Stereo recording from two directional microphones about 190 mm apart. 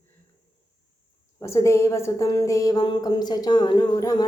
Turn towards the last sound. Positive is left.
turn(degrees=20)  # may be behind; listen again after turning